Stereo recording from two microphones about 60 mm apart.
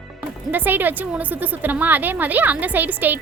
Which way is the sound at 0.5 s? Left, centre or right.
Right.